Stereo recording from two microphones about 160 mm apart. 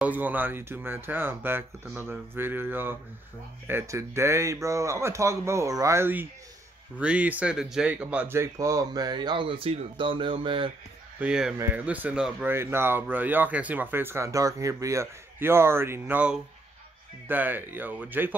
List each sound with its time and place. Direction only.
0.0 s speech: 10° right (ahead or behind); by 10.7 s 30° right (ahead or behind)
11.1 s speech: 5° right (ahead or behind)